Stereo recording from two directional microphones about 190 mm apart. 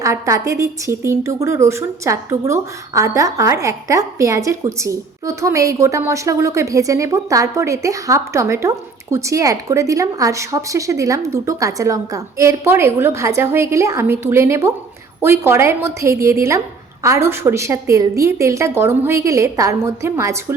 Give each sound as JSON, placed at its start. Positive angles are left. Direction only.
{"t": 0.0, "sound": "a woman's voice", "side_deg": -15}